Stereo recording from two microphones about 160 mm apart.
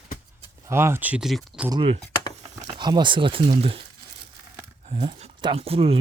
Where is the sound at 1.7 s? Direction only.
35° right (ahead or behind).